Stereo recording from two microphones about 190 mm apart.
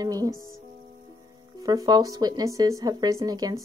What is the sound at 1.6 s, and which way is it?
Speech, 20° right (ahead or behind).